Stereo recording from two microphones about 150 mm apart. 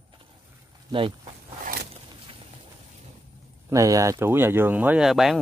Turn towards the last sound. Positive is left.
turn(degrees=0)  # may be behind; listen again after turning